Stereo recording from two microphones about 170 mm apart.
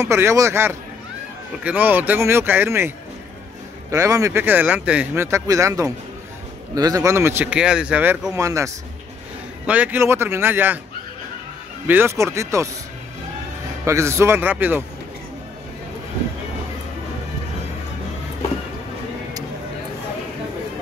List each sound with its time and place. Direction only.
0.0 s speech: 15° right (ahead or behind)
3.9 s speech: 20° right (ahead or behind)
11.9 s speech: 15° right (ahead or behind)
13.8 s speech: 15° right (ahead or behind)